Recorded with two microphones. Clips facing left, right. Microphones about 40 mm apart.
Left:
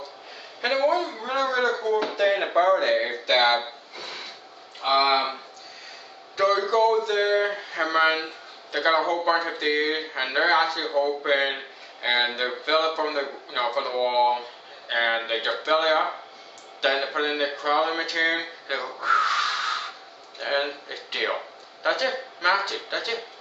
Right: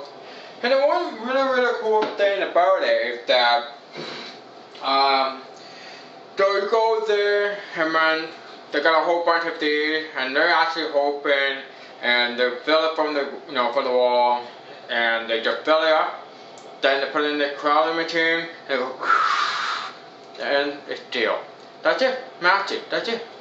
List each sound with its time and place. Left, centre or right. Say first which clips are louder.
0.6 s speech: right 4 dB; centre